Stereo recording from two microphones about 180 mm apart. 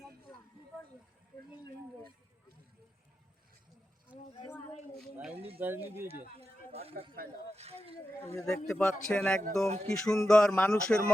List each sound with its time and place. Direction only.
4.1 s speech: 10° right (ahead or behind)
6.4 s speech: 35° right (ahead or behind)
8.4 s a man's voice: 5° left (ahead or behind)
9.6 s speech: 35° right (ahead or behind)
10.1 s a man's voice: 5° left (ahead or behind)